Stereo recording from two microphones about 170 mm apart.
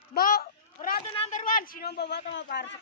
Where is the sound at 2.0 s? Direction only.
80° left.